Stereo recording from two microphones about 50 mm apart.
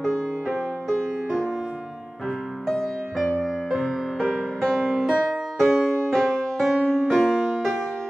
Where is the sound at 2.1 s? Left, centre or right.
Centre.